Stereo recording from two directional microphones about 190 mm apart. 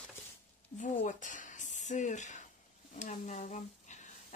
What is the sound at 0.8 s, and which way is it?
Speech, 40° left (ahead or behind).